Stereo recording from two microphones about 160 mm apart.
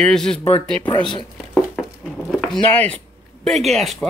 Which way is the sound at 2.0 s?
10° left (ahead or behind).